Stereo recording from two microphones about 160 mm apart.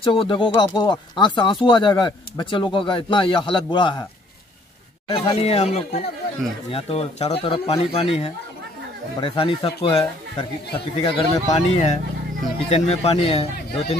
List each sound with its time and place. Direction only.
0.0 s speech: 35° left (ahead or behind)
5.0 s speech: 35° left (ahead or behind)
11.5 s speech: 45° left (ahead or behind)